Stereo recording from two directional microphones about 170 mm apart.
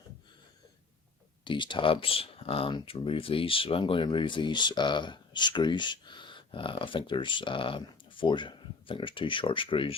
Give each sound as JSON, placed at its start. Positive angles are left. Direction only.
{"t": 1.5, "sound": "speech", "side_deg": 30}